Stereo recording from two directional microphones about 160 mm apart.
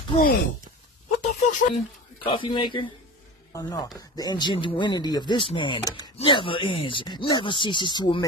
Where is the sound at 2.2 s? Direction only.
30° left (ahead or behind).